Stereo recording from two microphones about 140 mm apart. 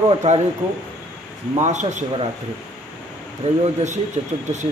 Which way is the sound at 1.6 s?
60° right (ahead or behind).